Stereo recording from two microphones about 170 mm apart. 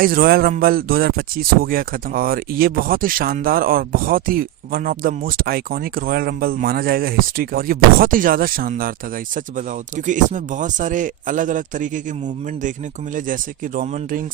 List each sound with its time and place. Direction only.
0.0 s speech: 60° right (ahead or behind)